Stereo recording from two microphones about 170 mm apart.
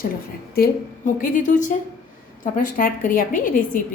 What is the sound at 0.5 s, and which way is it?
A woman's voice, 60° left (ahead or behind).